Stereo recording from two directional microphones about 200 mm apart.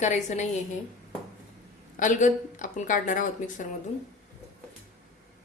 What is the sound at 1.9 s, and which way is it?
A woman's voice, 40° left (ahead or behind).